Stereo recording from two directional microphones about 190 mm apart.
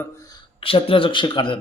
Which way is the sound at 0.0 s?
20° left (ahead or behind).